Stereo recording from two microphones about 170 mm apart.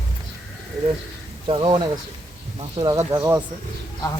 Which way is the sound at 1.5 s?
30° right (ahead or behind).